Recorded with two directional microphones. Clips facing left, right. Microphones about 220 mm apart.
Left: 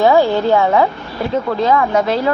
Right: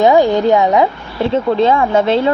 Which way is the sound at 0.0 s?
15° right (ahead or behind).